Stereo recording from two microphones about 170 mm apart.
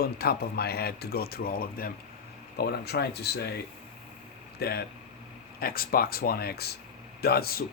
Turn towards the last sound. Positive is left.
turn(degrees=65)  # may be behind; listen again after turning